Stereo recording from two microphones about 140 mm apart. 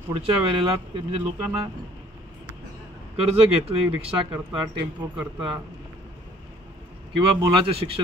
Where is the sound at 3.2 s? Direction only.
45° right (ahead or behind).